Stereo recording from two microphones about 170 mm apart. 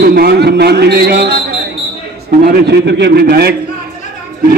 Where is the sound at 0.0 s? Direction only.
65° right (ahead or behind).